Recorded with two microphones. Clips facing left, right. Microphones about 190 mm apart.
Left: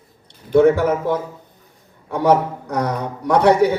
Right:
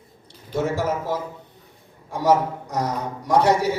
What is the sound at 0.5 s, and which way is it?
A man's voice, 60° left (ahead or behind).